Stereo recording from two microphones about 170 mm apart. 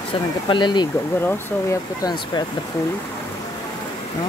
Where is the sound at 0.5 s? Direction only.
25° left (ahead or behind).